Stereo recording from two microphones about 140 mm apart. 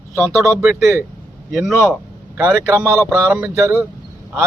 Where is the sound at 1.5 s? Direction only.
Centre (ahead or behind).